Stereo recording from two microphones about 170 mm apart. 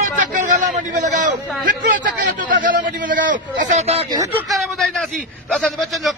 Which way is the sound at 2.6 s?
50° right (ahead or behind).